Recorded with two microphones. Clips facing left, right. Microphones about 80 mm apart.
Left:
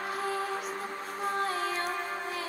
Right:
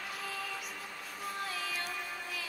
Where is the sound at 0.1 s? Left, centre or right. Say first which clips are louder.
Left 10 dB; left.